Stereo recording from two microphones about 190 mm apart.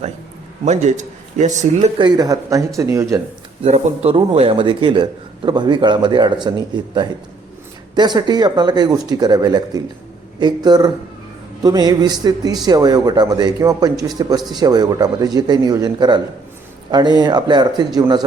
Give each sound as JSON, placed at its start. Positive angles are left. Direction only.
{"t": 0.6, "sound": "a man's voice", "side_deg": -40}
{"t": 2.0, "sound": "speech", "side_deg": -20}
{"t": 3.6, "sound": "speech", "side_deg": -35}
{"t": 7.9, "sound": "speech", "side_deg": -20}